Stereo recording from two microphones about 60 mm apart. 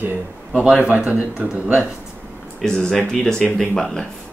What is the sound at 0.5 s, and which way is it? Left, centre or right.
A man's voice, centre.